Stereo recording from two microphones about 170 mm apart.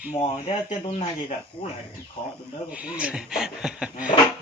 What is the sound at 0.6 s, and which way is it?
Speech, 40° left (ahead or behind).